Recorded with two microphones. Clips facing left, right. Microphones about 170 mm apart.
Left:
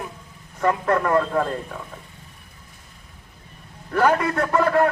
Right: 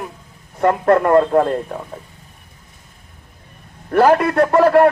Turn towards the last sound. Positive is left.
turn(degrees=-65)  # may be behind; listen again after turning